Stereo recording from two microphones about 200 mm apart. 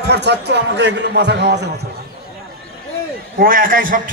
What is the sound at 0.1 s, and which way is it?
A man's voice, 55° right (ahead or behind).